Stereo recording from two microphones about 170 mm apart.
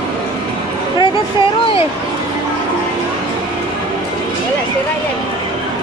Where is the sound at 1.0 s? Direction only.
30° left (ahead or behind).